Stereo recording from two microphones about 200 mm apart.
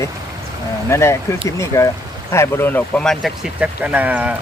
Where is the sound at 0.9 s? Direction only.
15° left (ahead or behind).